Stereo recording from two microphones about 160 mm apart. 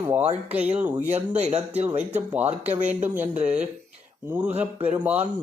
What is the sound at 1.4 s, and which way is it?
Speech, 45° right (ahead or behind).